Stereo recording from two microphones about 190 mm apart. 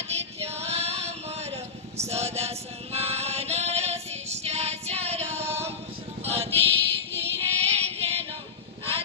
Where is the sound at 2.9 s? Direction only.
35° right (ahead or behind).